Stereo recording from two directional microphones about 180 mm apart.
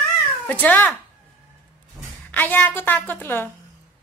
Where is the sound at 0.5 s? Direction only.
10° left (ahead or behind).